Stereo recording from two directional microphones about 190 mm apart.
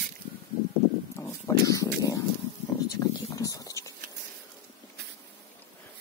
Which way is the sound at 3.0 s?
15° left (ahead or behind).